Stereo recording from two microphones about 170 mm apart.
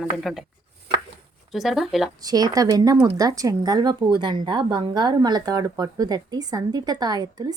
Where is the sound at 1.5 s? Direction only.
Centre (ahead or behind).